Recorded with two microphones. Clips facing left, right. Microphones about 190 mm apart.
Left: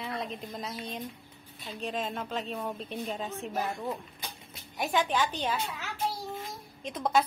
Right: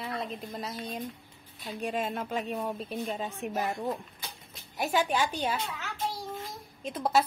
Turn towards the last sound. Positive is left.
turn(degrees=-5)  # may be behind; listen again after turning